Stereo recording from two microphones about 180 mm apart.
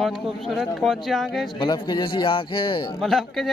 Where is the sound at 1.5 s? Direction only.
25° left (ahead or behind).